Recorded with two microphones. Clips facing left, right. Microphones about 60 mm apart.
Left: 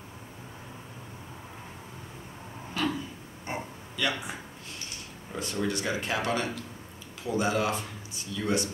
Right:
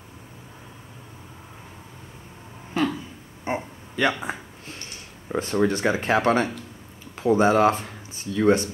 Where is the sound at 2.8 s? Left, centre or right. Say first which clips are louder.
Right 6 dB; right.